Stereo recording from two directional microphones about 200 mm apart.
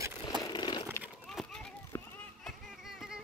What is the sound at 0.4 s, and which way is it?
Crumpling, 20° left (ahead or behind).